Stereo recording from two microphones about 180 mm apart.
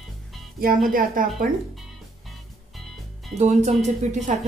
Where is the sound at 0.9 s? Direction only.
50° right (ahead or behind).